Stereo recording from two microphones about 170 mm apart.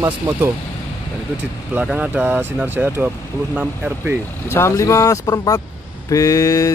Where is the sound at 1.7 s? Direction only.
10° right (ahead or behind).